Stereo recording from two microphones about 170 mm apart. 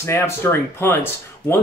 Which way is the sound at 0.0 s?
15° left (ahead or behind).